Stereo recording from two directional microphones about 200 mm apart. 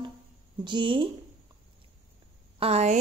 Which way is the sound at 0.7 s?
25° right (ahead or behind).